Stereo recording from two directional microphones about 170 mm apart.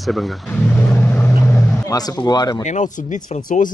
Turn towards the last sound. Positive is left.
turn(degrees=50)  # may be behind; listen again after turning